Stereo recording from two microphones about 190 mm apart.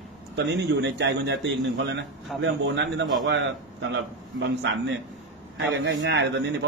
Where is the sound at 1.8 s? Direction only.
75° right (ahead or behind).